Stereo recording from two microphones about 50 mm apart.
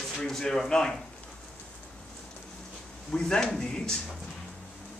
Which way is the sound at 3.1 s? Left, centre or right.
Centre.